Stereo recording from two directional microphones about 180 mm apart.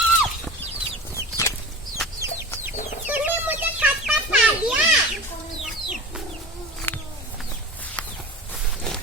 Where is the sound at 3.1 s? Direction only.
10° right (ahead or behind).